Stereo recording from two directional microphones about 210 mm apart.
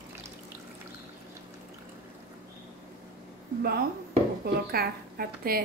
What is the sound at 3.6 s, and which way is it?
Speech, 45° right (ahead or behind).